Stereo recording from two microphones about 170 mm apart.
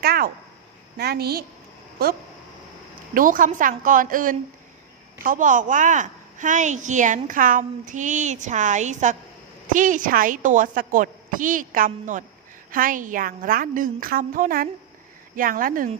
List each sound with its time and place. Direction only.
0.0 s a sound: 65° right (ahead or behind)
0.9 s a woman's voice: 65° right (ahead or behind)
3.2 s a woman's voice: 50° right (ahead or behind)